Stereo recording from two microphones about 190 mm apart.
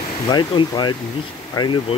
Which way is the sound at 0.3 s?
25° left (ahead or behind).